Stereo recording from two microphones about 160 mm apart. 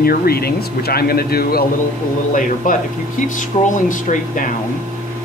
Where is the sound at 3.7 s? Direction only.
55° left (ahead or behind).